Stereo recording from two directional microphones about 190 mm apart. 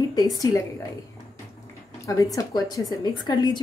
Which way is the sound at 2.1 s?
15° left (ahead or behind).